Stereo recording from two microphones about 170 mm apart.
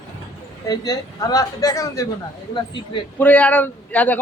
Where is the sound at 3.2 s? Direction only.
10° left (ahead or behind).